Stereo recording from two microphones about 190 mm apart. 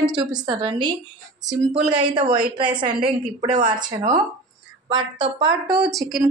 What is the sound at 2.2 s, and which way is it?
Speech, 55° right (ahead or behind).